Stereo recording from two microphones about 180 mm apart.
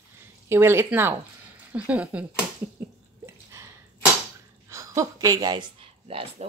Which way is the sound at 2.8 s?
10° right (ahead or behind).